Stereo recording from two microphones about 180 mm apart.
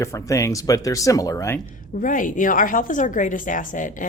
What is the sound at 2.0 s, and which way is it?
A woman's voice, 45° left (ahead or behind).